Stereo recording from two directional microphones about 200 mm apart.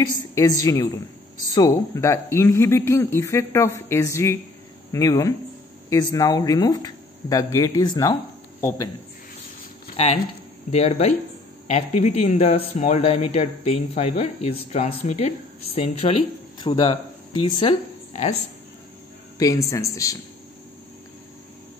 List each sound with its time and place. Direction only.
0.3 s speech: 15° left (ahead or behind)
10.7 s speech: 35° left (ahead or behind)
19.3 s speech: 15° left (ahead or behind)